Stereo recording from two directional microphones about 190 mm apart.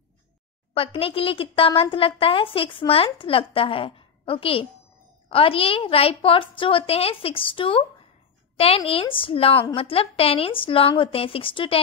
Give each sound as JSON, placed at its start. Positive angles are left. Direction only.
{"t": 0.7, "sound": "a woman's voice", "side_deg": 30}